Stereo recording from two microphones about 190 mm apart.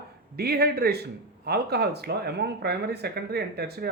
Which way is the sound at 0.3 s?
55° right (ahead or behind).